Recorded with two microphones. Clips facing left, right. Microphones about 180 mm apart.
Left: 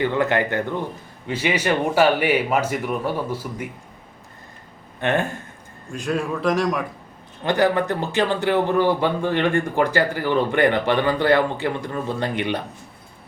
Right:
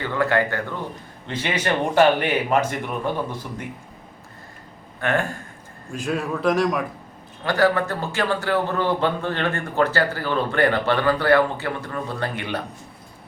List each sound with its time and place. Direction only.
0.0 s a man's voice: 20° left (ahead or behind)
4.9 s speech: 20° left (ahead or behind)
5.9 s a man's voice: centre (ahead or behind)
7.4 s a man's voice: 20° left (ahead or behind)